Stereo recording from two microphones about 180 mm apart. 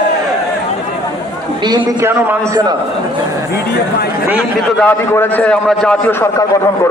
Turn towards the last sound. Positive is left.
turn(degrees=5)  # may be behind; listen again after turning